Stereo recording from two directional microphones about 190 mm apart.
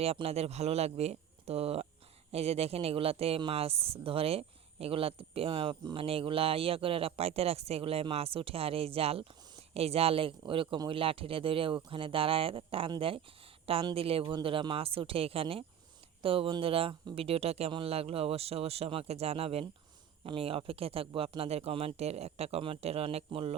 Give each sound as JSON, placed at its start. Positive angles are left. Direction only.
{"t": 0.0, "sound": "speech", "side_deg": -30}